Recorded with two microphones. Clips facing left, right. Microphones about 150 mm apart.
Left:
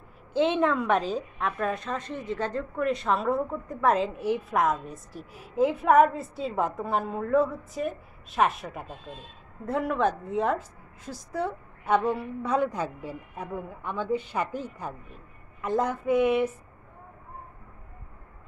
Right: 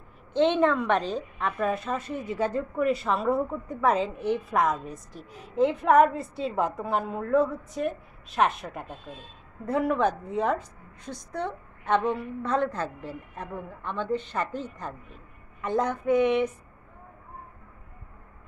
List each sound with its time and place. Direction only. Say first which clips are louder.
0.3 s a woman's voice: right 2 dB; 5° left (ahead or behind)